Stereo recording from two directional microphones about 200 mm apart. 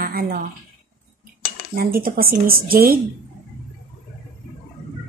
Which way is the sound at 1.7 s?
45° right (ahead or behind).